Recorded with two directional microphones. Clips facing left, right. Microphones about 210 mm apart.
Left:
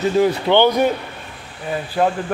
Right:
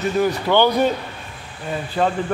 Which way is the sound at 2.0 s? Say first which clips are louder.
Left 2 dB; 5° left (ahead or behind).